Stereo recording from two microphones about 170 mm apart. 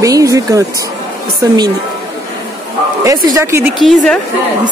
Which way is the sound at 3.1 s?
20° right (ahead or behind).